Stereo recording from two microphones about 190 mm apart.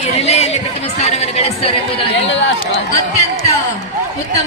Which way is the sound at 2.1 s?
75° left (ahead or behind).